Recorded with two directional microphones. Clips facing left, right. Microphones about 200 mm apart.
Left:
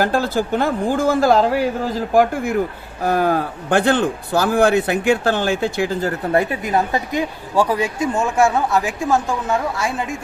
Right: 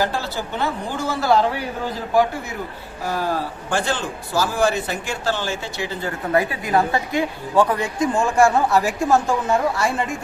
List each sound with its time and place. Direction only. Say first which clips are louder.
0.0 s a woman's voice: left 5 dB; 50° left (ahead or behind)
6.3 s a woman's voice: even; 20° left (ahead or behind); by 10.2 s centre (ahead or behind)